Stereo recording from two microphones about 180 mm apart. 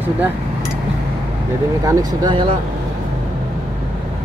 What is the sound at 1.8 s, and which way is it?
Speech, 25° right (ahead or behind).